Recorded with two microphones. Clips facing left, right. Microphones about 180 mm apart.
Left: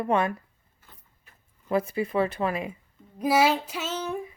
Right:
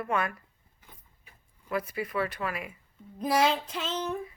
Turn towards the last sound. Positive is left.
turn(degrees=10)  # may be behind; listen again after turning